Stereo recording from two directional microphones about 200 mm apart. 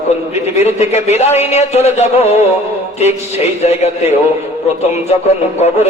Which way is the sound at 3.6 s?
30° left (ahead or behind).